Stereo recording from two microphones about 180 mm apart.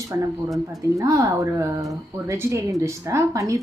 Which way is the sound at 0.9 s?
20° right (ahead or behind).